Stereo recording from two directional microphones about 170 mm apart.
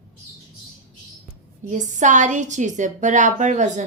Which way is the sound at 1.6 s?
45° right (ahead or behind).